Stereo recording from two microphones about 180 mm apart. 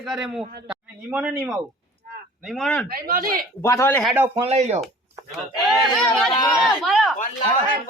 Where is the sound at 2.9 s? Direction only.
55° right (ahead or behind).